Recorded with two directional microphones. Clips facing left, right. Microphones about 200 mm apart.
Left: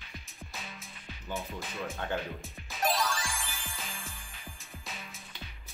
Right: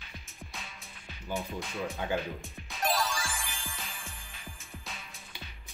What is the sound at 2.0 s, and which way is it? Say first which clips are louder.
Speech: right 2 dB; 10° right (ahead or behind).